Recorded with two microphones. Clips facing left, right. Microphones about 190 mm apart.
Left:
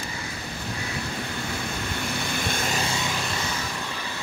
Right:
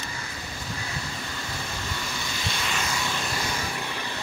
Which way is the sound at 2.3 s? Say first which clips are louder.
Left 3 dB; 50° left (ahead or behind).